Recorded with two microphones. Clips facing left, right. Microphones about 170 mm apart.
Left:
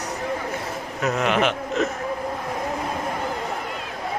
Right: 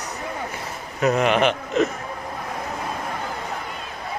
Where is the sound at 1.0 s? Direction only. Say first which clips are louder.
Right 3 dB; centre (ahead or behind).